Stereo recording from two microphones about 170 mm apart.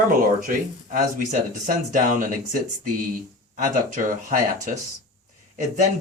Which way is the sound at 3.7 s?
55° right (ahead or behind).